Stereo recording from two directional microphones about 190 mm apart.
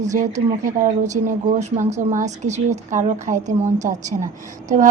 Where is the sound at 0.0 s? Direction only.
40° right (ahead or behind).